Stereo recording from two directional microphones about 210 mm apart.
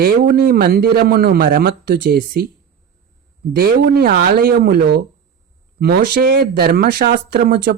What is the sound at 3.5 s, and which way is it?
Speech, 45° right (ahead or behind).